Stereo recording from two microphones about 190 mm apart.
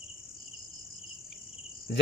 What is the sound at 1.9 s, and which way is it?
Cricket, 60° left (ahead or behind).